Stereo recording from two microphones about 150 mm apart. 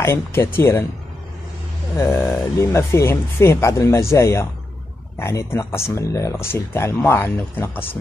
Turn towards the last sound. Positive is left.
turn(degrees=15)  # may be behind; listen again after turning